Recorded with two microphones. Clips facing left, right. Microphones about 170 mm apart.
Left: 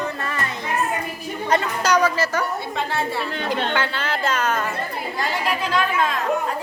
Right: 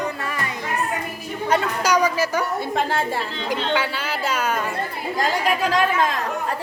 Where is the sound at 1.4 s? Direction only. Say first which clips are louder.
Even; 10° right (ahead or behind).